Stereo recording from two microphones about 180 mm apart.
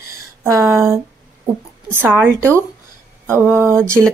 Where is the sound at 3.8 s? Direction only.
15° right (ahead or behind).